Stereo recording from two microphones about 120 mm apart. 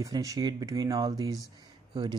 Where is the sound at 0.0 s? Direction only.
30° right (ahead or behind).